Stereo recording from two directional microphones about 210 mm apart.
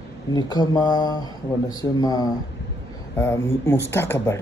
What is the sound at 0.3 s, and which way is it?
Speech, 20° left (ahead or behind).